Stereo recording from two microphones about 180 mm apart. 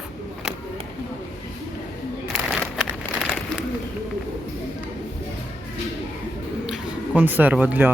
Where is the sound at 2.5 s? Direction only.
5° right (ahead or behind).